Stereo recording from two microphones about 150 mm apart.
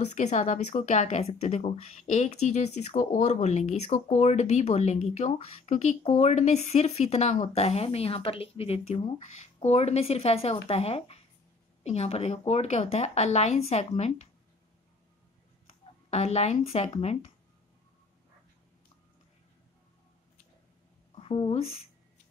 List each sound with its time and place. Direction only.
0.0 s speech: 50° left (ahead or behind)
16.1 s speech: 45° left (ahead or behind)
21.1 s a sound: 40° left (ahead or behind)